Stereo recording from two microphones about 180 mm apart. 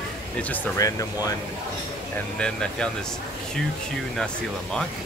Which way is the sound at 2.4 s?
5° left (ahead or behind).